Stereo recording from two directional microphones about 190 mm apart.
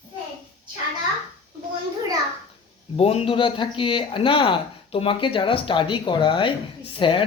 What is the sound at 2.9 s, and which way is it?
Speech, 30° left (ahead or behind).